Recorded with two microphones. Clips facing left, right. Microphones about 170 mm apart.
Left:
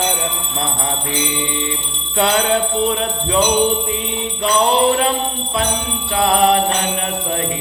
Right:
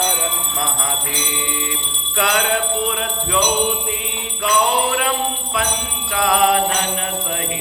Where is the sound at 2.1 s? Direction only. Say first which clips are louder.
Left 3 dB; 30° left (ahead or behind).